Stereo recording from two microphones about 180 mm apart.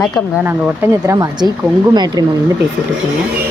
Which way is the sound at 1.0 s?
20° right (ahead or behind).